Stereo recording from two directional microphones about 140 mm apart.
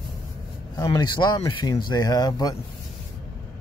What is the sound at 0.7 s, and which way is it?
Speech, 30° left (ahead or behind).